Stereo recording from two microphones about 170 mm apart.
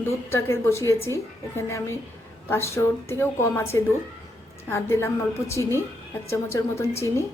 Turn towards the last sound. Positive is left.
turn(degrees=15)  # may be behind; listen again after turning